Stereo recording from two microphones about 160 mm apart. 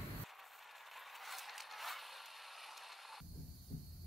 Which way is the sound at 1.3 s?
Centre (ahead or behind).